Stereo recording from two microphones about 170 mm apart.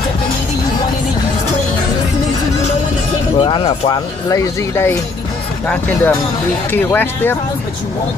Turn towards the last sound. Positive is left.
turn(degrees=10)  # may be behind; listen again after turning